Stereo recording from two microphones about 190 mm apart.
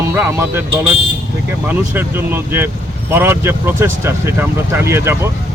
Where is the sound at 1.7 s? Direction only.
10° right (ahead or behind).